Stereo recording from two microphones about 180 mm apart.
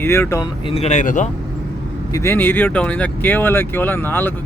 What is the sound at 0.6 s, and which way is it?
Speech, 35° left (ahead or behind).